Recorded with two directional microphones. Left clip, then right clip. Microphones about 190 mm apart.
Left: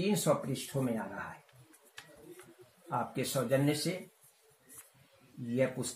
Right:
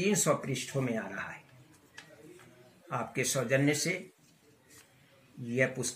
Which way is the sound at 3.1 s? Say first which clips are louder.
Right 3 dB; 10° right (ahead or behind).